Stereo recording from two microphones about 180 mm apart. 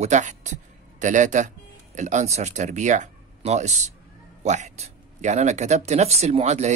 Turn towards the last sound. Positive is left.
turn(degrees=-35)  # may be behind; listen again after turning